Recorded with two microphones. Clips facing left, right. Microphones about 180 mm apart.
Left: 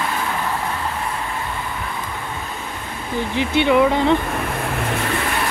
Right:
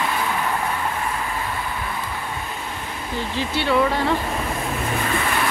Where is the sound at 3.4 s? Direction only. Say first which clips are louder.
Left 5 dB; 20° left (ahead or behind).